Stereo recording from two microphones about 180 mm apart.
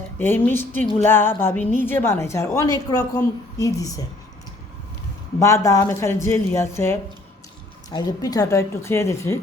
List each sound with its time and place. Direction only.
0.2 s a woman's voice: 10° left (ahead or behind)
5.4 s a woman's voice: 15° left (ahead or behind)